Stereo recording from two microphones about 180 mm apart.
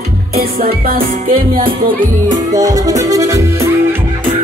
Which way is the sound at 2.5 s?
20° right (ahead or behind).